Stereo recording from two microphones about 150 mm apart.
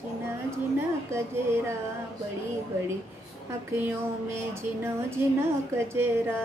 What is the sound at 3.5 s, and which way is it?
Speech, 15° right (ahead or behind).